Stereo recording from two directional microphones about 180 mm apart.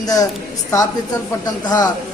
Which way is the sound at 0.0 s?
20° left (ahead or behind).